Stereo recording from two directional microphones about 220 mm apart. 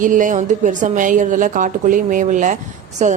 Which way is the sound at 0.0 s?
35° right (ahead or behind).